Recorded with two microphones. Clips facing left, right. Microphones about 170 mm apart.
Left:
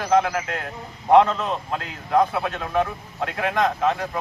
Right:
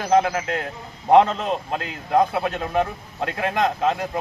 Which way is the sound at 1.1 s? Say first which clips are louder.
Right 1 dB; 30° right (ahead or behind).